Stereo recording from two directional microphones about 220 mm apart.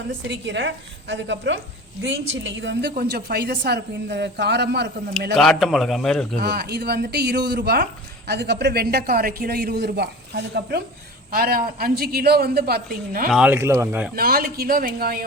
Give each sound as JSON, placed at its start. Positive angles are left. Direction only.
{"t": 0.1, "sound": "a woman's voice", "side_deg": -55}
{"t": 5.3, "sound": "a man's voice", "side_deg": 0}
{"t": 6.4, "sound": "a woman's voice", "side_deg": -50}
{"t": 13.3, "sound": "speech", "side_deg": -5}
{"t": 14.2, "sound": "a woman's voice", "side_deg": -40}